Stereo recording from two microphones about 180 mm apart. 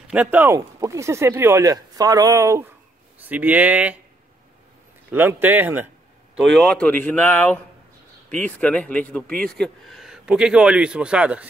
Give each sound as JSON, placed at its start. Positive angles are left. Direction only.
{"t": 0.1, "sound": "speech", "side_deg": -10}
{"t": 5.1, "sound": "speech", "side_deg": -10}
{"t": 6.3, "sound": "a man's voice", "side_deg": 0}